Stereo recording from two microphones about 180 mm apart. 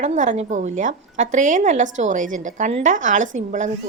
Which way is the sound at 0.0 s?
45° right (ahead or behind).